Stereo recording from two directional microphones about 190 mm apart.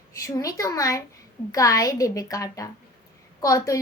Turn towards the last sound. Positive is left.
turn(degrees=15)  # may be behind; listen again after turning